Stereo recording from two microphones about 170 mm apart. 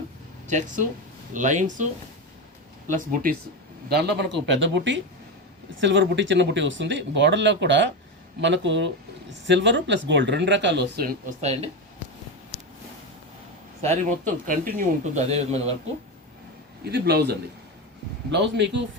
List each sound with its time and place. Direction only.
0.4 s speech: 45° right (ahead or behind)
2.9 s speech: 55° right (ahead or behind)
3.8 s speech: 75° right (ahead or behind)
11.3 s speech: 40° right (ahead or behind)
14.4 s speech: 55° right (ahead or behind)
16.8 s a man's voice: 70° right (ahead or behind)
18.3 s speech: 90° right